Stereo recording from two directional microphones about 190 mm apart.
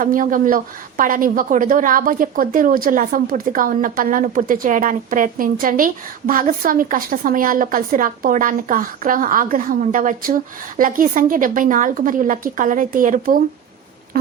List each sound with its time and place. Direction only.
0.0 s speech: 45° right (ahead or behind)